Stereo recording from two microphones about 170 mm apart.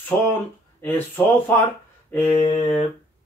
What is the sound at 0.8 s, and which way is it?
Speech, 10° left (ahead or behind).